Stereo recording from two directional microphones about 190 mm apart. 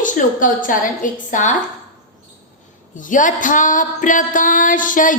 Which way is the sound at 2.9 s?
45° left (ahead or behind).